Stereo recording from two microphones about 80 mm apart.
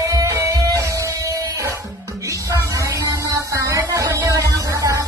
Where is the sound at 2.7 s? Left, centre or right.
Right.